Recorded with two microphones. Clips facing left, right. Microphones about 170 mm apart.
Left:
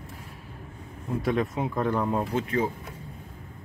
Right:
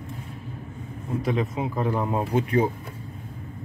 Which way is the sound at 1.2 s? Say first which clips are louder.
Even; centre (ahead or behind).